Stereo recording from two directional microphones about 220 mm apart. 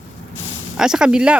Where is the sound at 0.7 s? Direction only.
5° right (ahead or behind).